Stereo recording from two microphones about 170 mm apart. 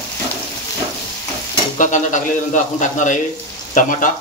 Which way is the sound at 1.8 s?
45° left (ahead or behind).